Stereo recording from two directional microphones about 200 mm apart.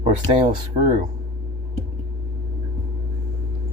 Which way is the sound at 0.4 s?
40° right (ahead or behind).